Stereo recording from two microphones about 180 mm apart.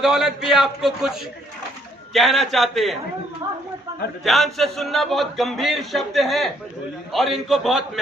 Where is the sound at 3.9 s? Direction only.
20° right (ahead or behind).